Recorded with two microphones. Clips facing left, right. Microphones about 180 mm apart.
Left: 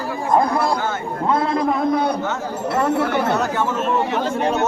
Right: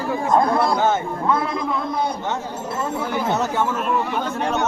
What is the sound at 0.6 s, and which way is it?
Speech, 25° right (ahead or behind).